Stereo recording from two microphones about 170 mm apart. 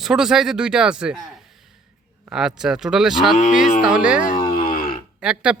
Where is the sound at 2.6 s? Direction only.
5° right (ahead or behind).